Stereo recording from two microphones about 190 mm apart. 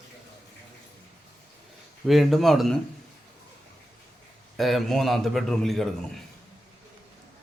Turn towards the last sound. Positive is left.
turn(degrees=0)  # may be behind; listen again after turning